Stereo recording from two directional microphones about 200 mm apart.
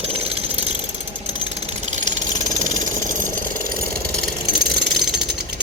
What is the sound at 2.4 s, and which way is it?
Jackhammer, 40° right (ahead or behind).